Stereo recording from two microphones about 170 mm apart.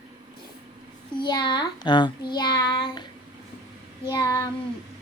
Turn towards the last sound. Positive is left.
turn(degrees=25)  # may be behind; listen again after turning